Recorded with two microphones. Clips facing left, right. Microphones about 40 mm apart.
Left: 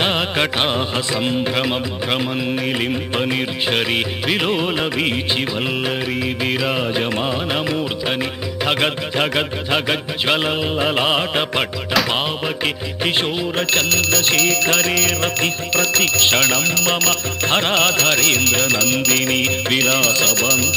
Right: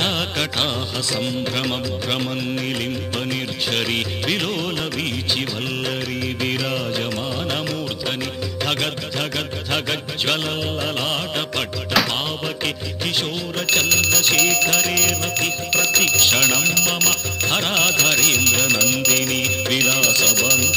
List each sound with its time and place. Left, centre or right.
0.0 s music: centre
8.6 s music: left
9.7 s music: centre
13.0 s music: left
13.7 s music: centre
19.8 s music: centre